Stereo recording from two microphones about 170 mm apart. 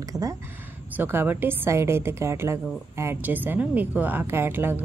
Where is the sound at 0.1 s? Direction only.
20° right (ahead or behind).